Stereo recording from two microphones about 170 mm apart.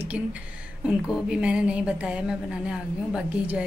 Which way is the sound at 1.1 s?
5° right (ahead or behind).